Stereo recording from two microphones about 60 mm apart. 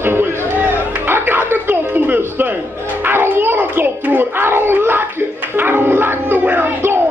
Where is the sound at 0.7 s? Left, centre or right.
Right.